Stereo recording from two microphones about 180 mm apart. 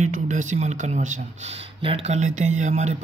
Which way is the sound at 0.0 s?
45° right (ahead or behind).